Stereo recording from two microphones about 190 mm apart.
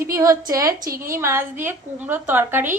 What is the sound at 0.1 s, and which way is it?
Speech, 15° right (ahead or behind).